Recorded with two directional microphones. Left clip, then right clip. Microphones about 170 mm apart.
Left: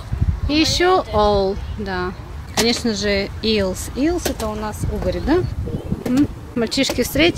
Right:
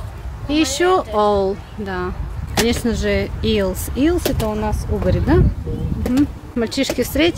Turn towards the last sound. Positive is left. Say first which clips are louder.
# left 1 dB
turn(degrees=0)  # may be behind; listen again after turning